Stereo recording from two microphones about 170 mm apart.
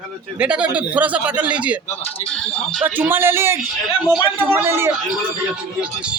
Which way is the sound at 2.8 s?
10° right (ahead or behind).